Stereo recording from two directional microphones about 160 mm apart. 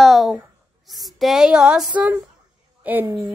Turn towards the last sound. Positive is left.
turn(degrees=-10)  # may be behind; listen again after turning